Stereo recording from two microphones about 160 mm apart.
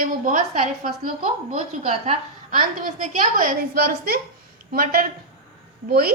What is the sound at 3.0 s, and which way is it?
A woman's voice, 50° right (ahead or behind).